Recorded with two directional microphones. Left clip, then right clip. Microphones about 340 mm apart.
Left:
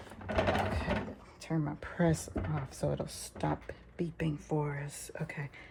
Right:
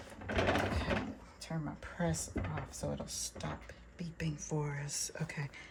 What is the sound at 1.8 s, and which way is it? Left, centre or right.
Speech, left.